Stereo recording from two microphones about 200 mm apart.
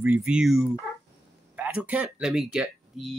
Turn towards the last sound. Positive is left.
turn(degrees=0)  # may be behind; listen again after turning